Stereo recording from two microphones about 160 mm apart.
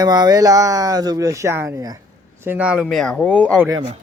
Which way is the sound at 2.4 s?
10° right (ahead or behind).